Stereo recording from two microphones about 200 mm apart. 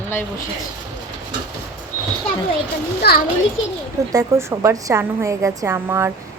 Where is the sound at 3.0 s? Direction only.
55° left (ahead or behind).